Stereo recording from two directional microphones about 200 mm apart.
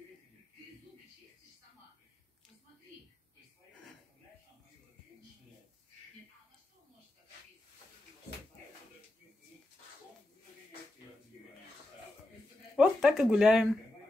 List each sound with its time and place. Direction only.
12.7 s speech: 5° right (ahead or behind)